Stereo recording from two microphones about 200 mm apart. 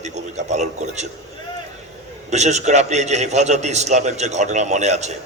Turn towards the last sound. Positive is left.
turn(degrees=-35)  # may be behind; listen again after turning